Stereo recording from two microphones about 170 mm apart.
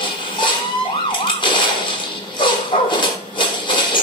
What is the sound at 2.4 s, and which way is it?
Dog, 30° left (ahead or behind).